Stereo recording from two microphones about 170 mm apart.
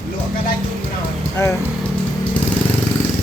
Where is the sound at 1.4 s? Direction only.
15° left (ahead or behind).